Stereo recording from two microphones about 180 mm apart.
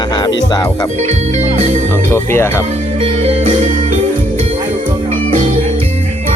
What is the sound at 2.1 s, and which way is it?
Speech, 15° left (ahead or behind).